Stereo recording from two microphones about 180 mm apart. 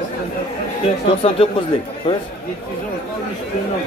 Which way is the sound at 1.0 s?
30° left (ahead or behind).